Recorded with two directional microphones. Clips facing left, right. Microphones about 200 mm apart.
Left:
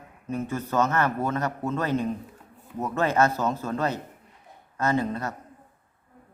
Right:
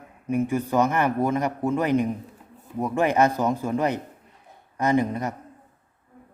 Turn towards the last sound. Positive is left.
turn(degrees=-15)  # may be behind; listen again after turning